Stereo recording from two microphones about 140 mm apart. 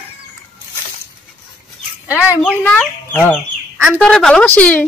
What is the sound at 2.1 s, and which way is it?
Speech, 15° left (ahead or behind).